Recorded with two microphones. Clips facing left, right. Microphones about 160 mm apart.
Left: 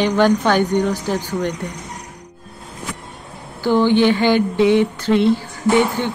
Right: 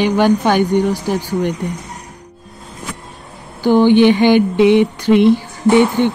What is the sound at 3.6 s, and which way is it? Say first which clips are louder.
Speech: right 5 dB; 15° right (ahead or behind).